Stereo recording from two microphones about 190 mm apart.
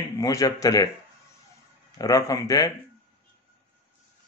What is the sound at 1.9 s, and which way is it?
Speech, 20° left (ahead or behind).